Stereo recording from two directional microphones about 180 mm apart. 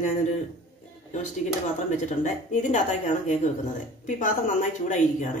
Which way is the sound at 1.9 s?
40° left (ahead or behind).